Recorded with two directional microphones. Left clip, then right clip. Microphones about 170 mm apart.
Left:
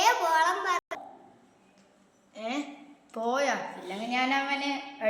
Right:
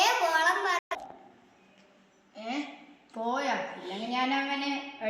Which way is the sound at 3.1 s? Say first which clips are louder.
Left 2 dB; centre (ahead or behind).